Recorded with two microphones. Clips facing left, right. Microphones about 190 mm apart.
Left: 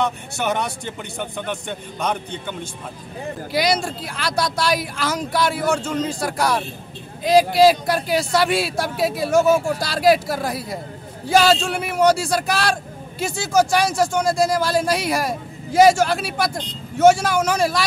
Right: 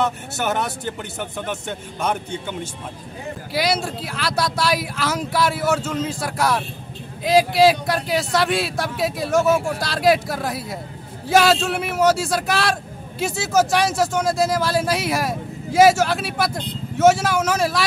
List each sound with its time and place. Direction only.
0.0 s a man's voice: 5° right (ahead or behind)